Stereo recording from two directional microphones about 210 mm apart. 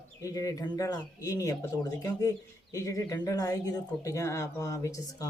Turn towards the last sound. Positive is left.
turn(degrees=15)  # may be behind; listen again after turning